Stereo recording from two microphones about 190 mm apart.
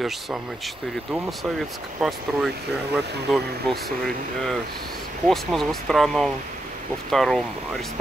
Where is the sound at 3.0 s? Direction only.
60° right (ahead or behind).